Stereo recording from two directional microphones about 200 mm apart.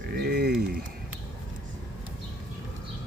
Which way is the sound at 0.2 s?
50° right (ahead or behind).